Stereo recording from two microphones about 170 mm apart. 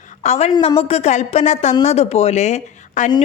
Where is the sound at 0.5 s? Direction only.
30° left (ahead or behind).